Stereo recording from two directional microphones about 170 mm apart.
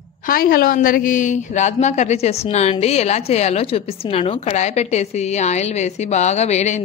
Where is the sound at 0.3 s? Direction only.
60° left (ahead or behind).